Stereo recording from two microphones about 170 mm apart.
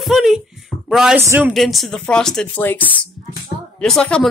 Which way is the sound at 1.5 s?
Centre (ahead or behind).